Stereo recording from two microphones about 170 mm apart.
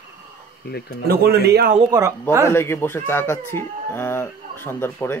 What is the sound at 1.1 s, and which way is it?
Speech, 70° right (ahead or behind).